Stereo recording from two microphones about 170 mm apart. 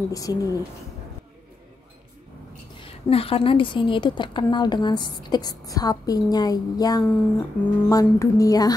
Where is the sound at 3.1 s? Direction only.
35° left (ahead or behind).